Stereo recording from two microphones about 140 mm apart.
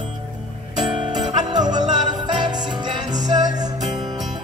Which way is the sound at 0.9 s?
30° right (ahead or behind).